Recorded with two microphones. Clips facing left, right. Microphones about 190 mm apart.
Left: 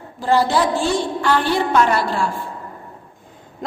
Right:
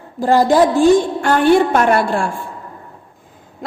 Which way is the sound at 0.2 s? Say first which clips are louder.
Right 5 dB; 45° right (ahead or behind).